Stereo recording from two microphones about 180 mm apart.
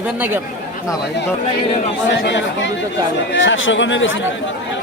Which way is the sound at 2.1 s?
80° left.